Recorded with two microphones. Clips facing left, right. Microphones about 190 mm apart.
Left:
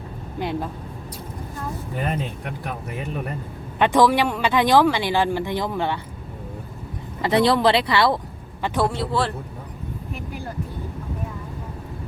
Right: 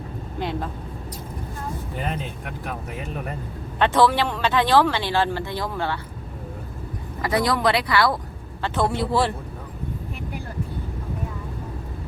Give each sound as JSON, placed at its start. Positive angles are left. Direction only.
{"t": 0.3, "sound": "speech", "side_deg": 10}
{"t": 3.8, "sound": "speech", "side_deg": 15}
{"t": 7.2, "sound": "speech", "side_deg": 25}
{"t": 8.6, "sound": "speech", "side_deg": 10}
{"t": 9.0, "sound": "a man's voice", "side_deg": -10}